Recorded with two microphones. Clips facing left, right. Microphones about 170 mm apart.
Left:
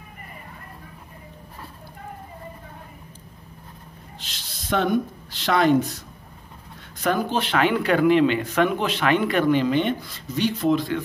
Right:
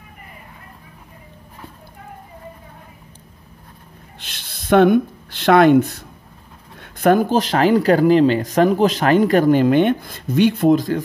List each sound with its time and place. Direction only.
4.2 s speech: 60° right (ahead or behind); by 11.0 s 45° right (ahead or behind)